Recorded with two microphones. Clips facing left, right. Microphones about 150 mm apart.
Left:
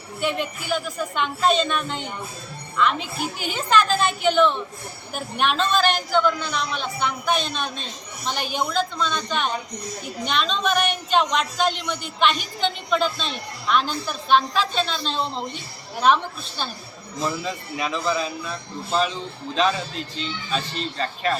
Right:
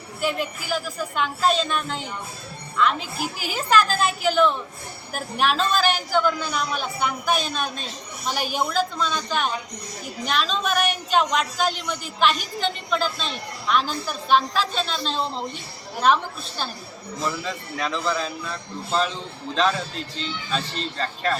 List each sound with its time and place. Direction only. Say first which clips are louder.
0.2 s a woman's voice: even; 5° right (ahead or behind)
17.2 s speech: left 2 dB; 15° left (ahead or behind)
21.0 s speech: left 1 dB; 10° left (ahead or behind)